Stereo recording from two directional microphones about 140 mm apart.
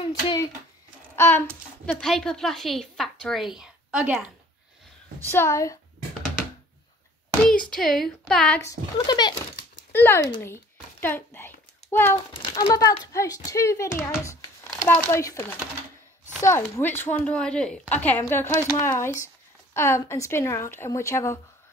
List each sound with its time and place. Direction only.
0.0 s a child's voice: 30° left (ahead or behind)
1.1 s a sound: 15° left (ahead or behind)
2.0 s a woman's voice: 5° left (ahead or behind)
5.2 s a woman's voice: 20° left (ahead or behind)
7.4 s a woman's voice: 5° left (ahead or behind)
8.6 s a woman's voice: 30° left (ahead or behind)
9.9 s a woman's voice: 15° left (ahead or behind)
12.4 s a woman's voice: 35° left (ahead or behind)
13.0 s a woman's voice: 25° left (ahead or behind)
16.4 s a woman's voice: 20° left (ahead or behind)